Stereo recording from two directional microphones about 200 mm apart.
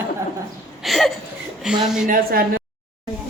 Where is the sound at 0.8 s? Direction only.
Centre (ahead or behind).